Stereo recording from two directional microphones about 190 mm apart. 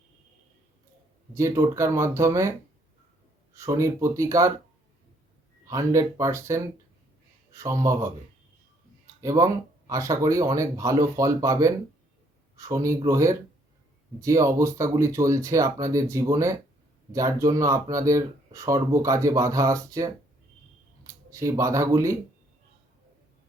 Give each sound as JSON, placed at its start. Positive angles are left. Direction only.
{"t": 1.3, "sound": "speech", "side_deg": -15}
{"t": 5.6, "sound": "speech", "side_deg": -15}
{"t": 9.2, "sound": "speech", "side_deg": -15}